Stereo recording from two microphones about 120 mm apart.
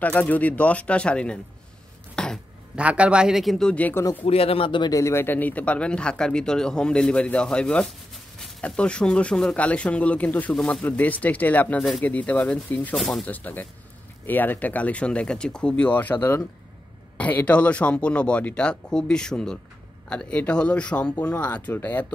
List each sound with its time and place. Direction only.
0.0 s speech: 15° left (ahead or behind)
2.1 s throat clearing: 5° left (ahead or behind)
2.7 s speech: 10° right (ahead or behind); by 4.0 s 15° left (ahead or behind)
4.2 s speech: 55° left (ahead or behind)
4.9 s speech: 20° left (ahead or behind)
12.9 s speech: centre (ahead or behind)
13.2 s speech: 15° left (ahead or behind)